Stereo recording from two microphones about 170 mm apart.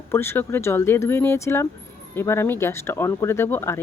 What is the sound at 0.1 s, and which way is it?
Speech, 15° left (ahead or behind).